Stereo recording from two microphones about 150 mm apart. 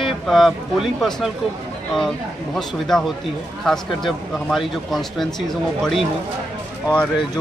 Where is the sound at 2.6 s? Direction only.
Centre (ahead or behind).